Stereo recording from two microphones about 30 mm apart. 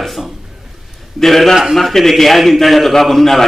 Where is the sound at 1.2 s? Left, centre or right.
Centre.